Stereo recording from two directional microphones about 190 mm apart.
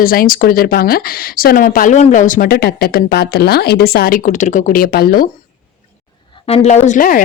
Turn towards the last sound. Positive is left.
turn(degrees=45)  # may be behind; listen again after turning